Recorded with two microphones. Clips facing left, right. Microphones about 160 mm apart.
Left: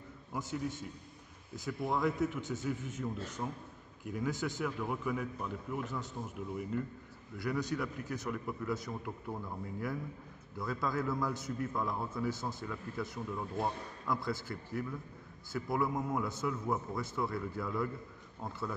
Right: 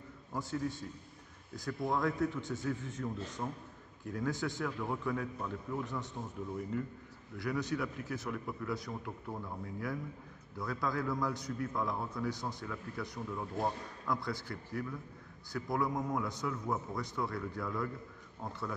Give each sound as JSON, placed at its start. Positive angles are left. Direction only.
{"t": 0.3, "sound": "a man's voice", "side_deg": 0}
{"t": 7.3, "sound": "a man's voice", "side_deg": 0}